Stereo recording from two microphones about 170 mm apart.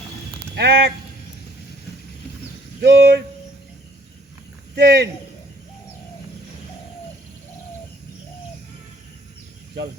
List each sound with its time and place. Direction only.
0.5 s speech: 80° right
2.8 s speech: 85° right
4.7 s speech: 75° right (ahead or behind)